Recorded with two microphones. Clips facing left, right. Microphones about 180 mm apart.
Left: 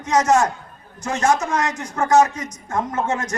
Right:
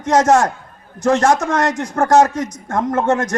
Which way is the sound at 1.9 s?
50° right (ahead or behind).